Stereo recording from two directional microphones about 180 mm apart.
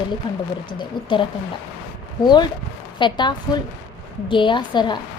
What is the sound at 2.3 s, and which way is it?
A woman's voice, 25° left (ahead or behind).